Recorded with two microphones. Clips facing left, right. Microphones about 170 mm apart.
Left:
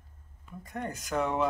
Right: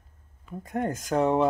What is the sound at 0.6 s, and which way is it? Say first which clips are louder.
Speech: right 8 dB; 50° right (ahead or behind).